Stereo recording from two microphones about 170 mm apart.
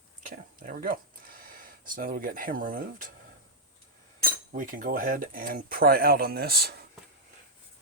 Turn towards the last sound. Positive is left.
turn(degrees=-70)  # may be behind; listen again after turning